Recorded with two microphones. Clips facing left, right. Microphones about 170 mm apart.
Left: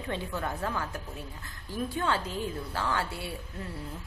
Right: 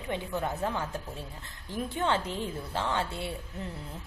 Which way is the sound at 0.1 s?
20° right (ahead or behind).